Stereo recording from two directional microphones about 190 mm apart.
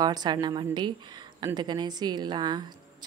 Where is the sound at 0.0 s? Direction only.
20° right (ahead or behind).